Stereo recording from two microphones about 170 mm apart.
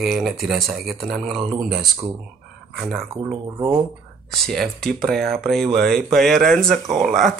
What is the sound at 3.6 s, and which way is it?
Speech, 25° right (ahead or behind).